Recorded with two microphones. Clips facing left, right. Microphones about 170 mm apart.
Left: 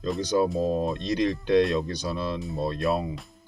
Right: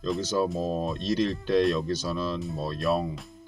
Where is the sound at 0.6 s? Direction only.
15° left (ahead or behind).